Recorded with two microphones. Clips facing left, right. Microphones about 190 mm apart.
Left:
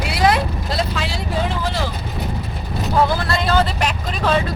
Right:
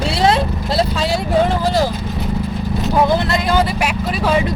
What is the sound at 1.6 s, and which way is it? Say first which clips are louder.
Speech: right 7 dB; 40° right (ahead or behind).